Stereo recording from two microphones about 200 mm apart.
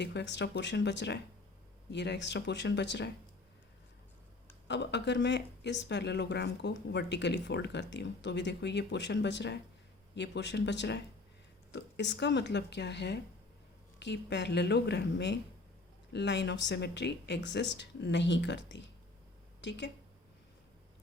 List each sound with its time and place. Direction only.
0.0 s speech: 60° left (ahead or behind)
4.7 s speech: 60° left (ahead or behind)